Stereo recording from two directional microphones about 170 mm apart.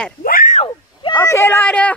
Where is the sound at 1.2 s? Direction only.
15° left (ahead or behind).